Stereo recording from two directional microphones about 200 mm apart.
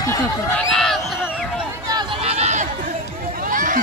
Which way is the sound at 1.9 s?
20° right (ahead or behind).